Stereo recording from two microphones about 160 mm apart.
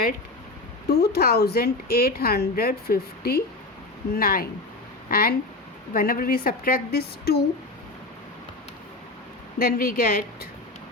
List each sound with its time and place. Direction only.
0.9 s a woman's voice: 90° left; by 7.3 s 70° left (ahead or behind)
9.6 s a woman's voice: 65° left (ahead or behind)